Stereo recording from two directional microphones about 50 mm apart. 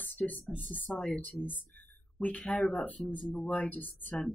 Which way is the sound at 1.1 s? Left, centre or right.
Left.